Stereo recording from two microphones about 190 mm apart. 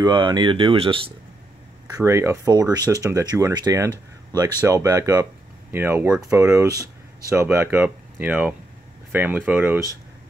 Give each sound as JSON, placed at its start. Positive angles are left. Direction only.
{"t": 0.0, "sound": "speech", "side_deg": -25}
{"t": 1.9, "sound": "speech", "side_deg": -15}
{"t": 6.7, "sound": "a sound", "side_deg": 15}
{"t": 7.2, "sound": "speech", "side_deg": -15}